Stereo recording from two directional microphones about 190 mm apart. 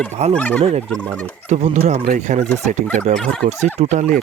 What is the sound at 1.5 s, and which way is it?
Speech, 35° right (ahead or behind).